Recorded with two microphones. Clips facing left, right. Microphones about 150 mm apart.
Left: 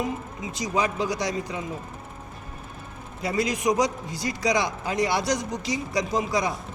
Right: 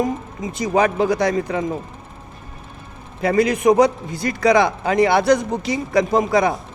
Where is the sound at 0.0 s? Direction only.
50° right (ahead or behind).